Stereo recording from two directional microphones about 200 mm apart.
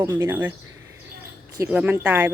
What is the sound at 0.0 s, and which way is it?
Speech, 15° right (ahead or behind).